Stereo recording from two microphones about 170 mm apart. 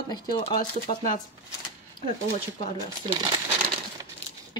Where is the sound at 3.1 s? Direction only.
25° right (ahead or behind).